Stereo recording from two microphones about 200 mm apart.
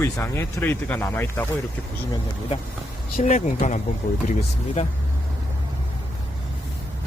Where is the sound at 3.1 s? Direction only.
35° left (ahead or behind).